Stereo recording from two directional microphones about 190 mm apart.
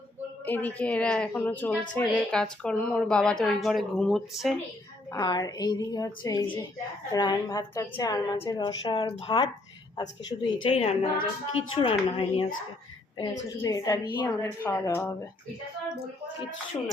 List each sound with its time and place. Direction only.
0.4 s a woman's voice: 10° left (ahead or behind)
5.1 s a woman's voice: 20° left (ahead or behind)
10.6 s a woman's voice: 30° left (ahead or behind)
13.6 s a woman's voice: 20° left (ahead or behind)